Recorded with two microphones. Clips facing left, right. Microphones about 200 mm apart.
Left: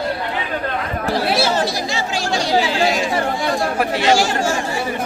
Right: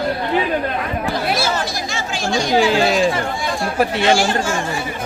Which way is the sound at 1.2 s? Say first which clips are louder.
Left 2 dB; 30° left (ahead or behind).